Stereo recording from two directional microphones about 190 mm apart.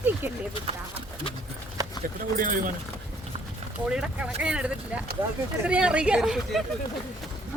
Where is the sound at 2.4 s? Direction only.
45° right (ahead or behind).